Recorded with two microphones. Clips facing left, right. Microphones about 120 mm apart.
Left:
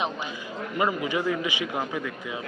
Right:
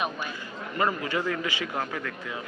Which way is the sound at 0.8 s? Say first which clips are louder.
Left 1 dB; 15° left (ahead or behind).